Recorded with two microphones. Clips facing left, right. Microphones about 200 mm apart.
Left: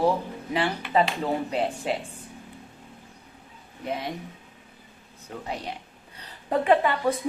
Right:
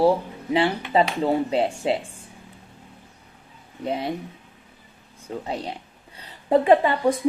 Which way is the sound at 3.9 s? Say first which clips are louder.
Right 4 dB; 30° right (ahead or behind).